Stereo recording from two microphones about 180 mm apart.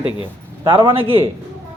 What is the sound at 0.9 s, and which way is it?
Speech, 30° right (ahead or behind).